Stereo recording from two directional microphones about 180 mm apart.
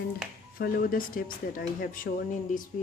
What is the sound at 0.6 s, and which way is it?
Speech, 50° left (ahead or behind).